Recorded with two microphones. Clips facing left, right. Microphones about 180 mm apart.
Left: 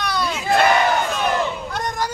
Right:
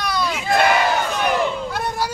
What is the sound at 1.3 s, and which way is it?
Crowd, 10° right (ahead or behind).